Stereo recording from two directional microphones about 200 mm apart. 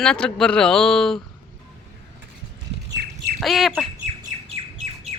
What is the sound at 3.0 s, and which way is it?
Squawk, 55° right (ahead or behind).